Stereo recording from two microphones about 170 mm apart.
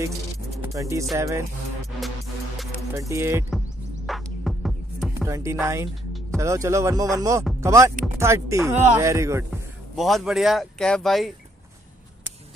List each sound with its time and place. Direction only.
0.6 s music: 15° right (ahead or behind)
1.1 s speech: 15° right (ahead or behind)
2.9 s speech: 15° right (ahead or behind)
3.4 s music: centre (ahead or behind)
5.1 s music: 15° right (ahead or behind)
6.3 s speech: 15° right (ahead or behind)
9.9 s speech: centre (ahead or behind)